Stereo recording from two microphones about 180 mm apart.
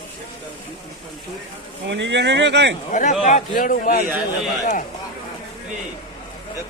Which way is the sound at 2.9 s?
45° left (ahead or behind).